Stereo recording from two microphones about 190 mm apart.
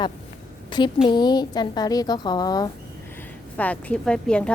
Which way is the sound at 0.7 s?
25° left (ahead or behind).